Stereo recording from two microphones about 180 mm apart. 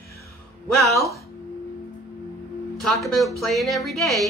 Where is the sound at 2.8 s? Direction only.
Centre (ahead or behind).